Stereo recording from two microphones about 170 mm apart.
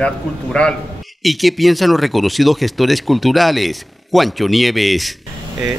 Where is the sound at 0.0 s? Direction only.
5° left (ahead or behind).